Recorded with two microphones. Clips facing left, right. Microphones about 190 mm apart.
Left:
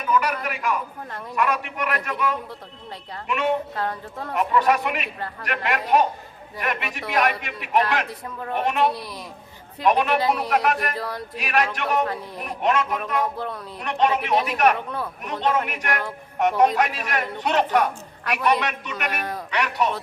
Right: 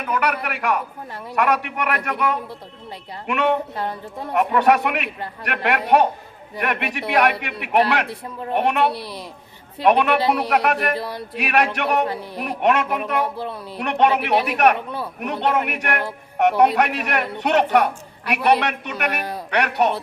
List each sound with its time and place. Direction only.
0.0 s a man's voice: 65° right (ahead or behind)
3.8 s a woman's voice: 15° right (ahead or behind)
4.4 s speech: 65° right (ahead or behind)
8.0 s speech: 30° right (ahead or behind)
8.5 s speech: 65° right (ahead or behind)